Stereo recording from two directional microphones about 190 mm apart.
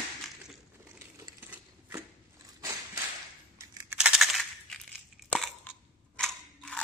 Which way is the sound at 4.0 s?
Centre (ahead or behind).